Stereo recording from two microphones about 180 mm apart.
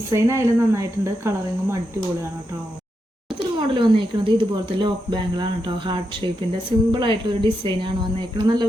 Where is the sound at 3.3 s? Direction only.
25° right (ahead or behind).